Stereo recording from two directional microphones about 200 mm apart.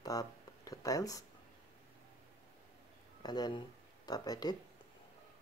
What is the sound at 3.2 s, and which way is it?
Speech, 20° left (ahead or behind).